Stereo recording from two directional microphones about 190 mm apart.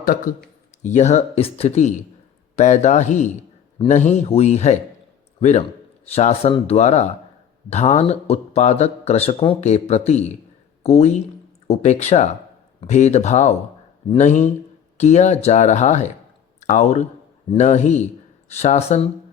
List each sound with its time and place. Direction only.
0.0 s a man's voice: 45° left (ahead or behind)